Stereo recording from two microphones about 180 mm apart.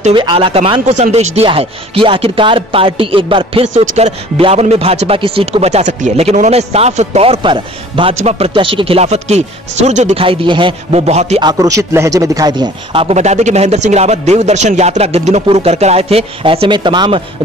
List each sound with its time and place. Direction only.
0.1 s a man's voice: 25° right (ahead or behind)
11.4 s a man's voice: 20° right (ahead or behind)